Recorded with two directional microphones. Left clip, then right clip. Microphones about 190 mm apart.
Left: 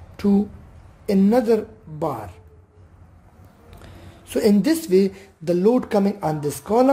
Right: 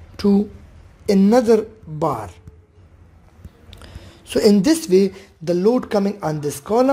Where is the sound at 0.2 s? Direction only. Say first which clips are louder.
Right 3 dB; 15° right (ahead or behind).